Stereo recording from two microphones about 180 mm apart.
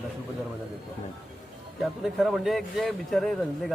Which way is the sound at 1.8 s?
Centre (ahead or behind).